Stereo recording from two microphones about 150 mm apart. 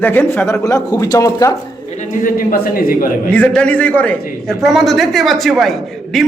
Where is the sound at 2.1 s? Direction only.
70° left (ahead or behind).